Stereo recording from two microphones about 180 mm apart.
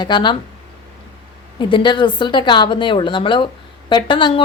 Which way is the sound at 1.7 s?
25° left (ahead or behind).